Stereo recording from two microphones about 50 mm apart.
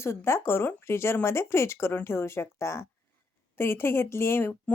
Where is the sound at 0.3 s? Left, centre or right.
Left.